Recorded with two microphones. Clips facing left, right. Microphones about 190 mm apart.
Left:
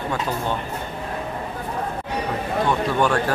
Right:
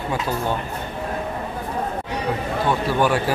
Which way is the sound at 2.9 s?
5° right (ahead or behind).